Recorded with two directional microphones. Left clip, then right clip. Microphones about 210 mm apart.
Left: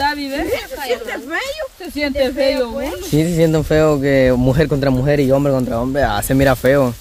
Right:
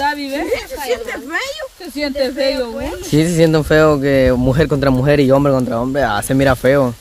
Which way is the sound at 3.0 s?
15° right (ahead or behind).